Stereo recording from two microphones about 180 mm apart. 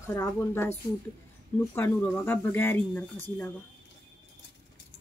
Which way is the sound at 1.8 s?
10° left (ahead or behind).